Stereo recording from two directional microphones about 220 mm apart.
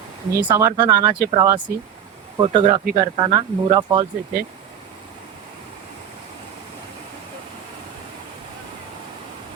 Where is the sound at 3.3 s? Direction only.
20° right (ahead or behind).